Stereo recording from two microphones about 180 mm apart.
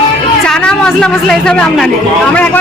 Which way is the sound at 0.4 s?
5° left (ahead or behind).